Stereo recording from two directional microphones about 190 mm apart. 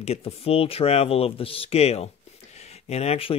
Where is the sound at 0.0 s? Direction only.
35° left (ahead or behind).